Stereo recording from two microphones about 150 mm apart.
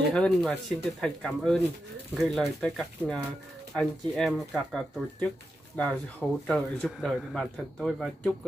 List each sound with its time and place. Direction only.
0.1 s speech: 5° left (ahead or behind)